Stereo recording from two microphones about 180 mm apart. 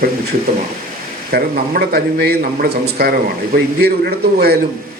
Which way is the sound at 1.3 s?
55° right (ahead or behind).